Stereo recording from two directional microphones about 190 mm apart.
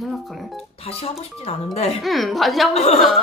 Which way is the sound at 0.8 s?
30° left (ahead or behind).